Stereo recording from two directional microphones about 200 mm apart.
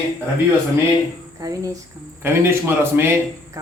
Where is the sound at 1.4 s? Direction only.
15° right (ahead or behind).